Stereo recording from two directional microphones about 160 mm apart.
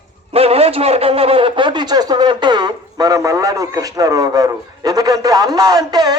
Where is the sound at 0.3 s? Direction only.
40° right (ahead or behind).